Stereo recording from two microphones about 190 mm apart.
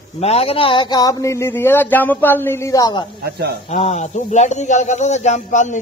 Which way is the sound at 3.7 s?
35° left (ahead or behind).